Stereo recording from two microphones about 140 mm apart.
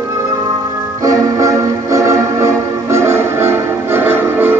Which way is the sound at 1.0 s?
25° right (ahead or behind).